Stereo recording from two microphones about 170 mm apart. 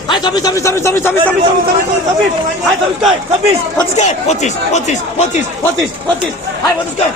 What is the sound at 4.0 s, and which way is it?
Speech, 45° left (ahead or behind).